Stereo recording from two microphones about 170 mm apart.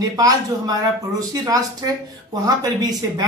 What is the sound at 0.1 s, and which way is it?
Speech, 20° right (ahead or behind).